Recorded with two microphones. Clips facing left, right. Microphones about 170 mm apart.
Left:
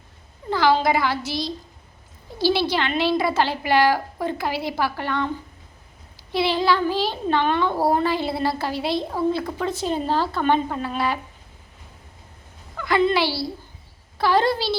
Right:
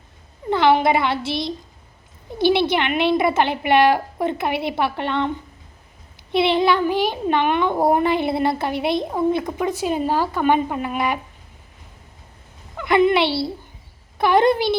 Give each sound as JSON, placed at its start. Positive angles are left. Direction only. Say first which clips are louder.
{"t": 0.5, "sound": "a woman's voice", "louder": "right 3 dB", "side_deg": -25}
{"t": 6.3, "sound": "a child's voice", "louder": "right 3 dB", "side_deg": -20}
{"t": 12.7, "sound": "a child's voice", "louder": "right 4 dB", "side_deg": -20}